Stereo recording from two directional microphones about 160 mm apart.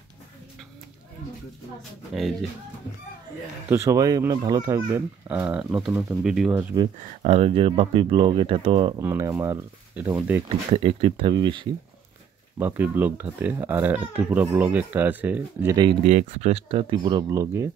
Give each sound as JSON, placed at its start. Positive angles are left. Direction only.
{"t": 3.7, "sound": "speech", "side_deg": -20}
{"t": 7.0, "sound": "speech", "side_deg": -40}
{"t": 8.9, "sound": "speech", "side_deg": -20}
{"t": 10.7, "sound": "speech", "side_deg": -40}
{"t": 12.5, "sound": "speech", "side_deg": -10}
{"t": 15.7, "sound": "speech", "side_deg": -30}
{"t": 16.0, "sound": "speech", "side_deg": -45}